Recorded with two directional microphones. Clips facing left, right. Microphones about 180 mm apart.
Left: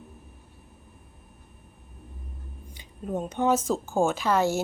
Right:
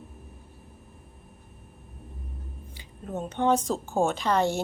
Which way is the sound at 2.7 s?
10° left (ahead or behind).